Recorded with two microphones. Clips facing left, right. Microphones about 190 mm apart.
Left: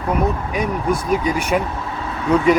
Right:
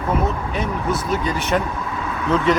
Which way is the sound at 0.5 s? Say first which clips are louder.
Left 3 dB; 10° left (ahead or behind).